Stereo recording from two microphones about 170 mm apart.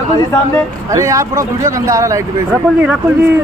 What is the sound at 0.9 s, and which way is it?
Speech, 20° right (ahead or behind).